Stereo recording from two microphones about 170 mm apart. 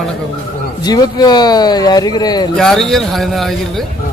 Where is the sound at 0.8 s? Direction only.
25° left (ahead or behind).